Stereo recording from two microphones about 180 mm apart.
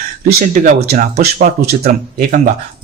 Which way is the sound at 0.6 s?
50° right (ahead or behind).